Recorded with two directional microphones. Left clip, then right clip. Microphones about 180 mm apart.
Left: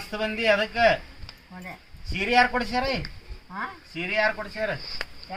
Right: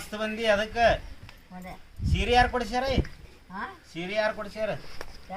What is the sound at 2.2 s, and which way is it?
Speech, 10° right (ahead or behind).